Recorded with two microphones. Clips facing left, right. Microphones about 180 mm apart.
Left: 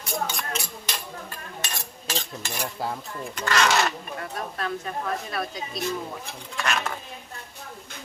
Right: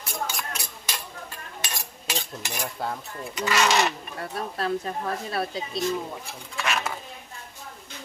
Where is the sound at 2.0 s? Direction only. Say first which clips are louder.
Left 1 dB; 15° right (ahead or behind).